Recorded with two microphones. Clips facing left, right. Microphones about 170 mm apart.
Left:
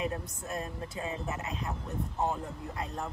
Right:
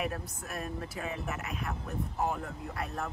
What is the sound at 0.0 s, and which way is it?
Speech, 20° left (ahead or behind).